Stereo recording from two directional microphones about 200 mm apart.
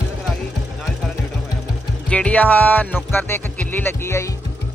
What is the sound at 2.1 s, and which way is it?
Speech, 5° left (ahead or behind).